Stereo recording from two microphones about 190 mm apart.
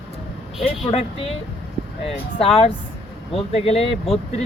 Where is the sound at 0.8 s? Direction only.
30° left (ahead or behind).